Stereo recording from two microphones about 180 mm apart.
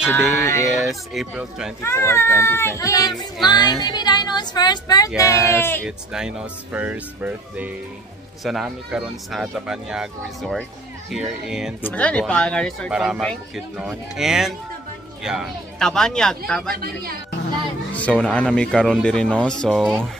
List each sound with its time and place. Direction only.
0.4 s speech: 15° left (ahead or behind)
0.7 s speech: centre (ahead or behind)
1.8 s speech: 15° left (ahead or behind)
5.9 s speech: 5° right (ahead or behind)
11.8 s speech: 5° left (ahead or behind)
16.7 s speech: 55° right (ahead or behind)
17.9 s speech: 5° left (ahead or behind)